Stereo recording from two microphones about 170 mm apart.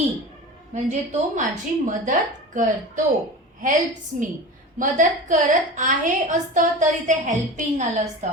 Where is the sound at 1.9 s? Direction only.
50° right (ahead or behind).